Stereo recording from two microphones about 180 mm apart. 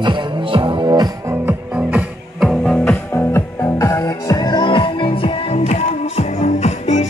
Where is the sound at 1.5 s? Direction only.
10° right (ahead or behind).